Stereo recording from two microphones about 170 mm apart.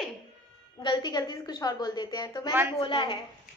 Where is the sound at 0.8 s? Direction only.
25° left (ahead or behind).